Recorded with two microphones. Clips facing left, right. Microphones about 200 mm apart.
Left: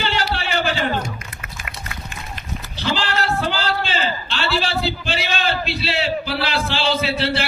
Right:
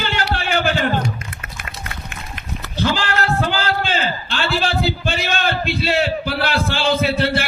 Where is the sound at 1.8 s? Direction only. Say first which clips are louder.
Right 1 dB; 60° right (ahead or behind).